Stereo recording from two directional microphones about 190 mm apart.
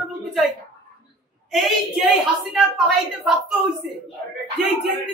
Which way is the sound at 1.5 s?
Centre (ahead or behind).